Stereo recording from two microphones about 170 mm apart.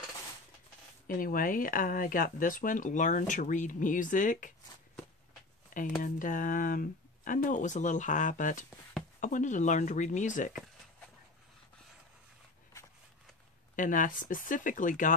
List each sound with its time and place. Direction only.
1.0 s speech: 55° left (ahead or behind)
5.7 s speech: 50° left (ahead or behind)
13.7 s speech: 50° left (ahead or behind)